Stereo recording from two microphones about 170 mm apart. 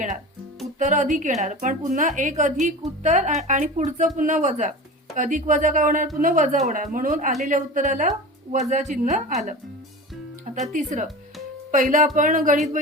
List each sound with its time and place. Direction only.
0.8 s speech: 45° right (ahead or behind)
10.7 s speech: 45° right (ahead or behind)